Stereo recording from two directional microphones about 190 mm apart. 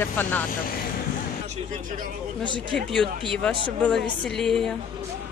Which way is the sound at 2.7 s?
5° left (ahead or behind).